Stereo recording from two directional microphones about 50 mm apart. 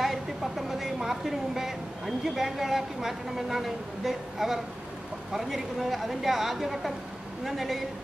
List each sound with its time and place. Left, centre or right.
0.0 s a woman's voice: centre